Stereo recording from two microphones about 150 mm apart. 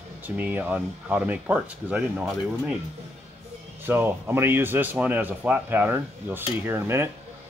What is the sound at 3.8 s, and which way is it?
Speech, 15° right (ahead or behind).